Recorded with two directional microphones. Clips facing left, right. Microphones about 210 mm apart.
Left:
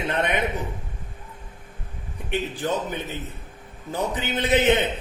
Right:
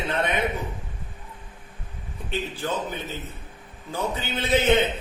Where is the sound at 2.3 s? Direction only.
15° left (ahead or behind).